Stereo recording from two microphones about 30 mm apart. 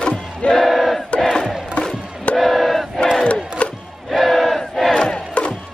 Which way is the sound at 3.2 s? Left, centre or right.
Left.